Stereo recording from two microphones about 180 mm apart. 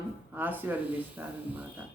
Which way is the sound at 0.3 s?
10° right (ahead or behind).